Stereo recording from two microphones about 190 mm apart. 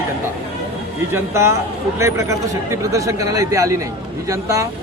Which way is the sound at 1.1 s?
15° right (ahead or behind).